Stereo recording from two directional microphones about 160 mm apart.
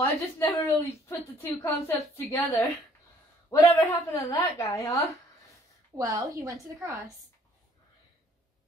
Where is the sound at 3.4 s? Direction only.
20° left (ahead or behind).